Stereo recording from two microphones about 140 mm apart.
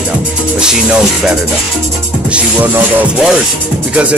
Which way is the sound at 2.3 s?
10° right (ahead or behind).